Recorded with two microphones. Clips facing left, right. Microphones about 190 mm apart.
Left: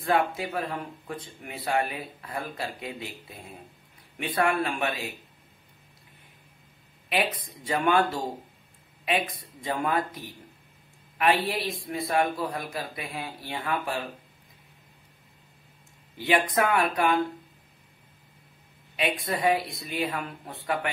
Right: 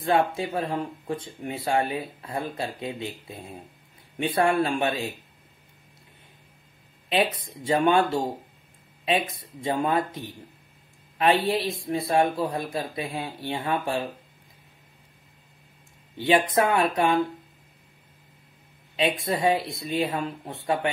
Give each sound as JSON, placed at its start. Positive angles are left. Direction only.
{"t": 0.0, "sound": "speech", "side_deg": -25}
{"t": 7.3, "sound": "speech", "side_deg": -25}
{"t": 16.2, "sound": "speech", "side_deg": -25}
{"t": 18.9, "sound": "speech", "side_deg": -25}